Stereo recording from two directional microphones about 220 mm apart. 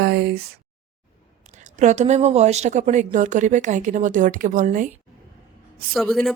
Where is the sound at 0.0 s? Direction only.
50° right (ahead or behind).